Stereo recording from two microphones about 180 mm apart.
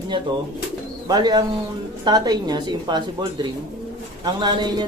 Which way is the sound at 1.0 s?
20° right (ahead or behind).